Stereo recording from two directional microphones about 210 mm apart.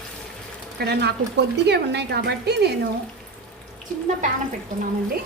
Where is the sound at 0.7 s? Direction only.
50° right (ahead or behind).